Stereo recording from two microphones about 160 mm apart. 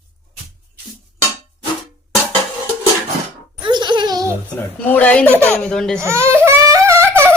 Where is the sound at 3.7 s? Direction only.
30° right (ahead or behind).